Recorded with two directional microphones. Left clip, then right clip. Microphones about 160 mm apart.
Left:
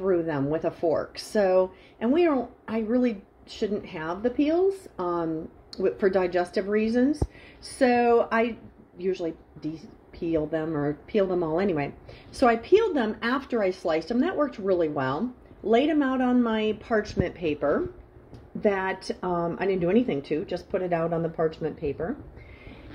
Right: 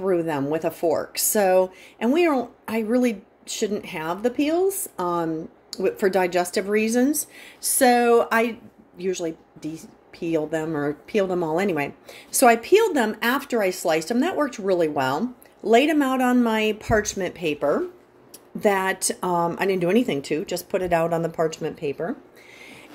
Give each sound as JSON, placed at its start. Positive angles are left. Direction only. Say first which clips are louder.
{"t": 0.0, "sound": "a woman's voice", "louder": "right 2 dB", "side_deg": -15}